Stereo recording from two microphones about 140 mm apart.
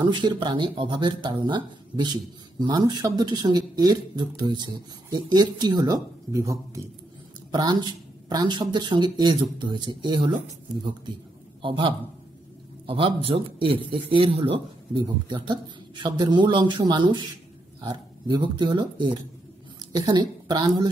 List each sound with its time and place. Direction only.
0.0 s speech: 35° right (ahead or behind)
11.6 s a man's voice: 35° right (ahead or behind)